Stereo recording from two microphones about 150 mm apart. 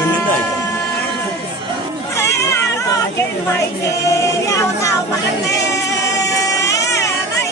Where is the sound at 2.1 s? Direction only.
20° left (ahead or behind).